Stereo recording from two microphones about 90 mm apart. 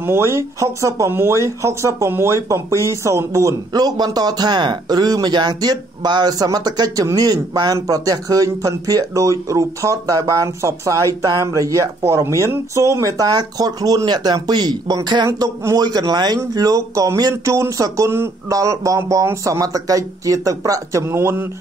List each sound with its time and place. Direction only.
0.0 s a man's voice: 30° right (ahead or behind); by 15.0 s 50° right (ahead or behind)
15.2 s a man's voice: 40° right (ahead or behind)
16.5 s speech: 40° right (ahead or behind)